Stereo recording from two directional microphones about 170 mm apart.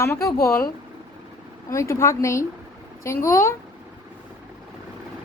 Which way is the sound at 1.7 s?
15° left (ahead or behind).